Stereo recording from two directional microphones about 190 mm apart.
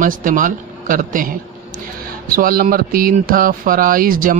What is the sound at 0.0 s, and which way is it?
Speech, 45° right (ahead or behind).